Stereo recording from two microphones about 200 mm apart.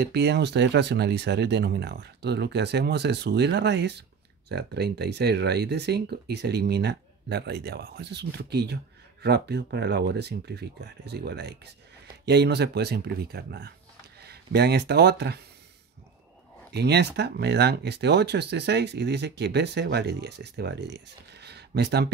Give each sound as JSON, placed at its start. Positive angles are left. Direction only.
{"t": 0.0, "sound": "speech", "side_deg": -55}
{"t": 16.7, "sound": "speech", "side_deg": -55}